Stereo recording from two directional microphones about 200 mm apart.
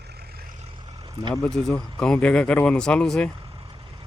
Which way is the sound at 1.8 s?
5° left (ahead or behind).